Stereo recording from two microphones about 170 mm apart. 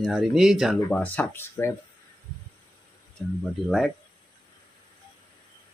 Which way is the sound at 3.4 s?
Centre (ahead or behind).